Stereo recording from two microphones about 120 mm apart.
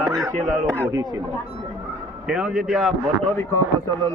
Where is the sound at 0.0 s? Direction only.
5° left (ahead or behind).